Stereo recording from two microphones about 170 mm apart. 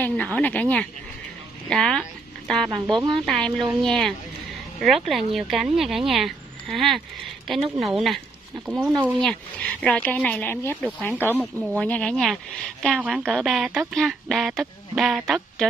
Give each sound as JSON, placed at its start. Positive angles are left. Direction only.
{"t": 0.0, "sound": "speech", "side_deg": 10}
{"t": 2.7, "sound": "speech", "side_deg": -25}
{"t": 3.3, "sound": "speech", "side_deg": 5}